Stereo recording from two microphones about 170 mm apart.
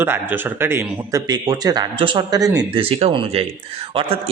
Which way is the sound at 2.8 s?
35° right (ahead or behind).